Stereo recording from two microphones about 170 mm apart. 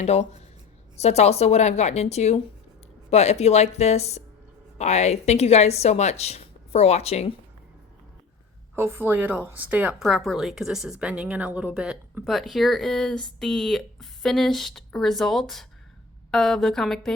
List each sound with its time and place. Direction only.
0.0 s a woman's voice: 40° left (ahead or behind)
8.7 s a woman's voice: 15° right (ahead or behind)
10.0 s speech: centre (ahead or behind)